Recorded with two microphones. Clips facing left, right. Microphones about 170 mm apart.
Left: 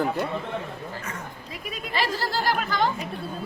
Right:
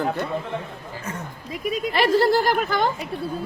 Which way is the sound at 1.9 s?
60° right (ahead or behind).